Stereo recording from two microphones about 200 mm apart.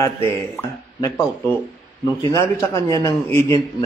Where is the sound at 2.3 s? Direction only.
15° left (ahead or behind).